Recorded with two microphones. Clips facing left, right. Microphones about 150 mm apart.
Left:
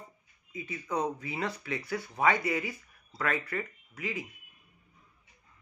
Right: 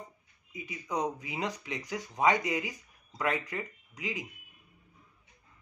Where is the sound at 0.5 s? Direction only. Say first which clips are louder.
Left 1 dB; 15° right (ahead or behind).